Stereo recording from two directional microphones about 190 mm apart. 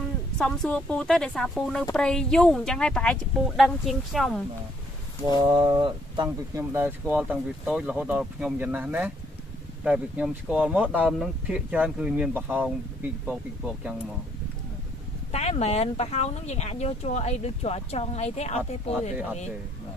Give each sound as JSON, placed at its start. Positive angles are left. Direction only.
{"t": 0.4, "sound": "speech", "side_deg": 5}
{"t": 5.5, "sound": "speech", "side_deg": -20}
{"t": 10.9, "sound": "speech", "side_deg": 5}
{"t": 15.3, "sound": "speech", "side_deg": 35}